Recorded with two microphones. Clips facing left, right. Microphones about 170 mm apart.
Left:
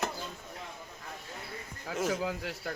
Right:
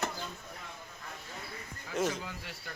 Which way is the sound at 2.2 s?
90° left.